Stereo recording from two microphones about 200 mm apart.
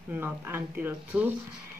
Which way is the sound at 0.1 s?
10° right (ahead or behind).